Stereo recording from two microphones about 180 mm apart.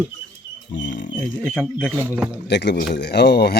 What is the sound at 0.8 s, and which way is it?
Speech, 90° left.